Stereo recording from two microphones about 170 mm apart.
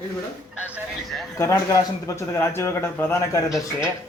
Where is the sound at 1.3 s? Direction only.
15° left (ahead or behind).